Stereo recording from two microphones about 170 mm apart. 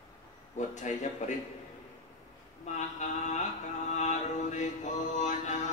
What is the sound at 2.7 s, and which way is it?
Mantra, 45° left (ahead or behind).